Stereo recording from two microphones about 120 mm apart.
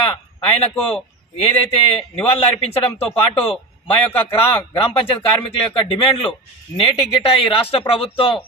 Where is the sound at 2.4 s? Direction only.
55° left (ahead or behind).